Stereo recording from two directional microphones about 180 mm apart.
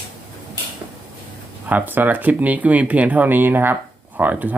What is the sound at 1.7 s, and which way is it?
Speech, 10° right (ahead or behind).